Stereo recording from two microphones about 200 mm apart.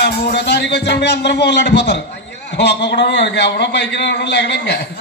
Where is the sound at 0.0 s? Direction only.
55° left (ahead or behind).